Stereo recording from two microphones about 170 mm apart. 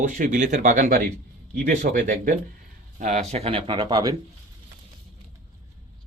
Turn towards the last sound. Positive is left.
turn(degrees=-25)  # may be behind; listen again after turning